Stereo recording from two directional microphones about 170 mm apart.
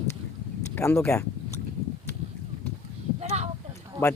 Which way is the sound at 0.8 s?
15° left (ahead or behind).